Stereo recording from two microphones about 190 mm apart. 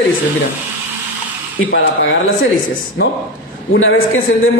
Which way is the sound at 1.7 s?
90° left.